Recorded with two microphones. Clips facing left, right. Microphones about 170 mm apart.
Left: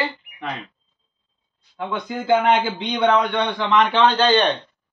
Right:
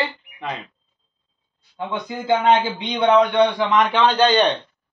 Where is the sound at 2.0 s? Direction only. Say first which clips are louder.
Even; 15° right (ahead or behind).